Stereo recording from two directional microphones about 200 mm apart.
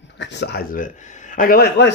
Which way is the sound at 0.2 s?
60° left (ahead or behind).